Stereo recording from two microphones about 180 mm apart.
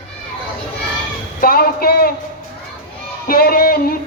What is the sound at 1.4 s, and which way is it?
Speech, 55° left (ahead or behind).